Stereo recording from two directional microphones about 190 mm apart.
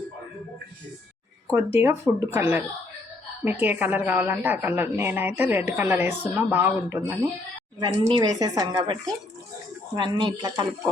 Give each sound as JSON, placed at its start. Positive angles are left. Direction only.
{"t": 1.5, "sound": "a woman's voice", "side_deg": -15}
{"t": 8.0, "sound": "speech", "side_deg": -25}